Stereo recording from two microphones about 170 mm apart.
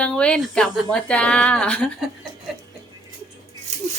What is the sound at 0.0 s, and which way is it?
Speech, 5° left (ahead or behind).